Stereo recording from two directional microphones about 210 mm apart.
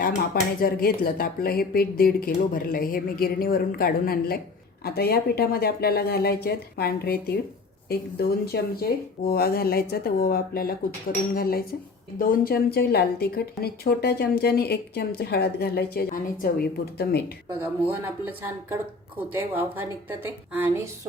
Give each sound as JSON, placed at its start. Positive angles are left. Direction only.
{"t": 0.0, "sound": "speech", "side_deg": 45}
{"t": 17.8, "sound": "speech", "side_deg": -10}